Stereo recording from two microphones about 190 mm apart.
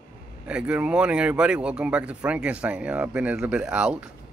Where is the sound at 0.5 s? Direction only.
5° right (ahead or behind).